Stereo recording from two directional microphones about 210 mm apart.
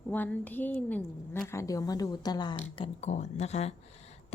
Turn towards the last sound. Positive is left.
turn(degrees=30)  # may be behind; listen again after turning